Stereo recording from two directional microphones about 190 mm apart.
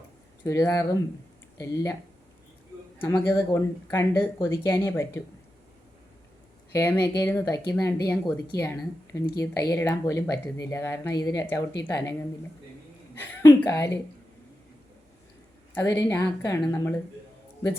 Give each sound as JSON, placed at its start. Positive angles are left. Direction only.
{"t": 0.4, "sound": "speech", "side_deg": 15}
{"t": 3.0, "sound": "speech", "side_deg": 15}
{"t": 6.7, "sound": "speech", "side_deg": 10}
{"t": 13.1, "sound": "a woman's voice", "side_deg": 15}
{"t": 15.7, "sound": "speech", "side_deg": 15}